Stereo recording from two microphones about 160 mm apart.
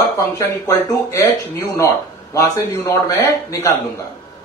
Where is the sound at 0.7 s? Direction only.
20° left (ahead or behind).